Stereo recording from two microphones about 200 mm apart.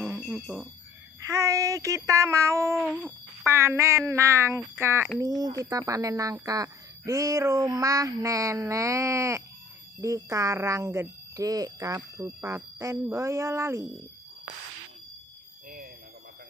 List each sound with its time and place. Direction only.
0.2 s speech: 5° right (ahead or behind)
1.2 s speech: 15° right (ahead or behind)
2.8 s a sound: centre (ahead or behind)
3.4 s speech: 15° right (ahead or behind)